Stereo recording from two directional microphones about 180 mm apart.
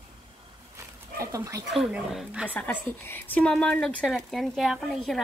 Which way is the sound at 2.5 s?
10° left (ahead or behind).